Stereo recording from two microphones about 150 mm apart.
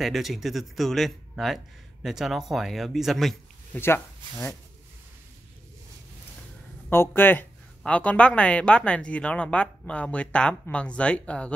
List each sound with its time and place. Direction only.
0.0 s speech: centre (ahead or behind)
3.7 s speech: 15° left (ahead or behind)
6.9 s speech: 15° left (ahead or behind)